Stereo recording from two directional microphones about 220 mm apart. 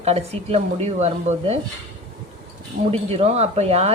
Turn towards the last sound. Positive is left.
turn(degrees=-30)  # may be behind; listen again after turning